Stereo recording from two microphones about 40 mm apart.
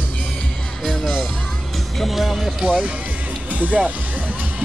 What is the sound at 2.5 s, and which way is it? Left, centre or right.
Speech, right.